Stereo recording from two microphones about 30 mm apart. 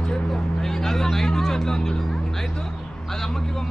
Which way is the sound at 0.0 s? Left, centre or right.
Centre.